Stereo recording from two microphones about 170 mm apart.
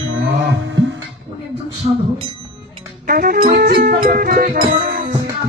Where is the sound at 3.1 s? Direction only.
60° right (ahead or behind).